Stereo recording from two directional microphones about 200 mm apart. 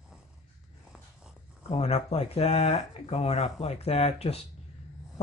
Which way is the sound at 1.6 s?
30° left (ahead or behind).